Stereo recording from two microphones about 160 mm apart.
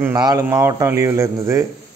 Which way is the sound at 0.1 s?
25° right (ahead or behind).